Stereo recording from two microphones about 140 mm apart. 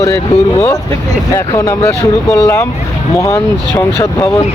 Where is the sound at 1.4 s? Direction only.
20° left (ahead or behind).